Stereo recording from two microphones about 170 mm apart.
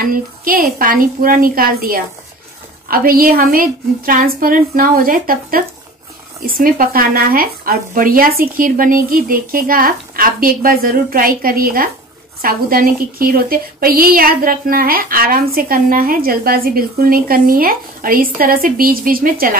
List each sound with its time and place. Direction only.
0.0 s a woman's voice: 55° right (ahead or behind)